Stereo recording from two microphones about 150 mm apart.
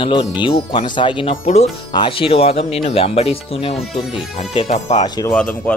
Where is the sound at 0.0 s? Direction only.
30° left (ahead or behind).